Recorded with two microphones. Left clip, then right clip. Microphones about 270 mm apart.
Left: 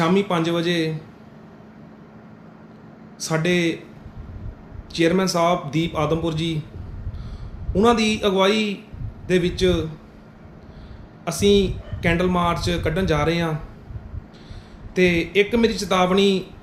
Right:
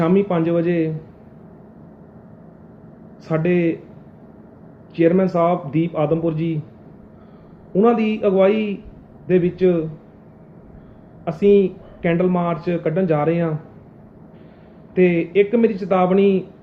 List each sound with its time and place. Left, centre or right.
0.0 s speech: left
3.2 s speech: left
4.9 s speech: left
7.7 s speech: left
11.3 s speech: left
14.9 s speech: left